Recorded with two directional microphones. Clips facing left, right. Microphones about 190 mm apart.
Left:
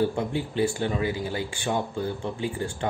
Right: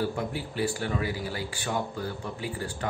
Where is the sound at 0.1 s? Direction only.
25° left (ahead or behind).